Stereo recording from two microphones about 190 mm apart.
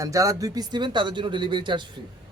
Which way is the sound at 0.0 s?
15° right (ahead or behind).